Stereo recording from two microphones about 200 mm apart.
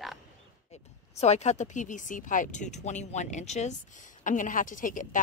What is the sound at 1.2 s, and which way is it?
Speech, 35° left (ahead or behind).